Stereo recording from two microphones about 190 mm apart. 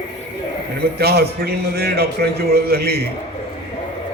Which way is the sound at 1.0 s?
60° right (ahead or behind).